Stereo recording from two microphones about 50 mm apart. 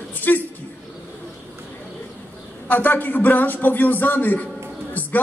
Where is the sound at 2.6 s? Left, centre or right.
Left.